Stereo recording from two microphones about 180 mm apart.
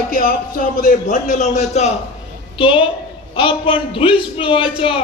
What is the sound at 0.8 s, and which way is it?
A man's voice, 45° left (ahead or behind).